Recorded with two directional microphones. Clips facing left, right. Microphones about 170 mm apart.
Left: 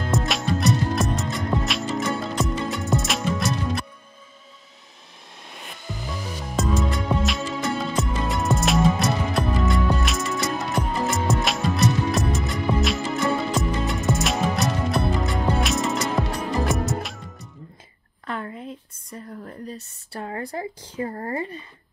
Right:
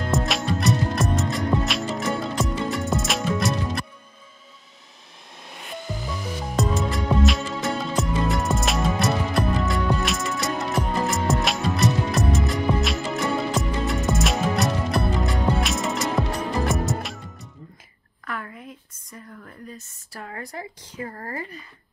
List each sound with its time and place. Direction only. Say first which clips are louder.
0.1 s music: even; centre (ahead or behind)
6.5 s music: left 1 dB; centre (ahead or behind)
18.2 s a sound: left 3 dB; 30° left (ahead or behind)